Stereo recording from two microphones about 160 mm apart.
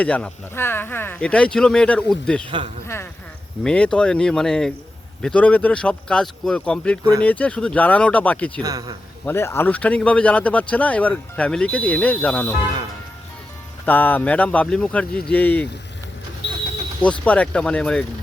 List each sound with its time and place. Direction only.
0.0 s speech: 10° left (ahead or behind)
2.8 s a sound: 15° left (ahead or behind)
3.6 s speech: 5° left (ahead or behind)
8.6 s a man's voice: 20° right (ahead or behind)
9.2 s speech: 15° left (ahead or behind)
13.8 s speech: 10° left (ahead or behind)
17.0 s speech: 10° left (ahead or behind)